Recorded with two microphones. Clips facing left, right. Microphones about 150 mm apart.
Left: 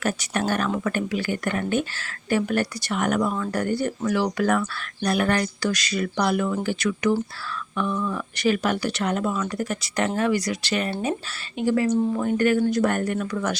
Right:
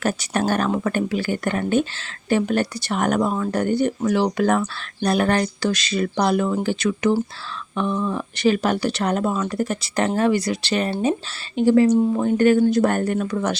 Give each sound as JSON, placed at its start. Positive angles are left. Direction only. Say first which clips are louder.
{"t": 0.0, "sound": "speech", "louder": "right 3 dB", "side_deg": -30}